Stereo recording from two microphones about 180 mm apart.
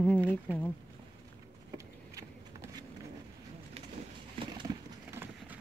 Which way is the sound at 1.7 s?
15° right (ahead or behind).